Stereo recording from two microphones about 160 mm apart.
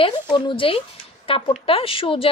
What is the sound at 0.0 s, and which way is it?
Speech, 30° left (ahead or behind).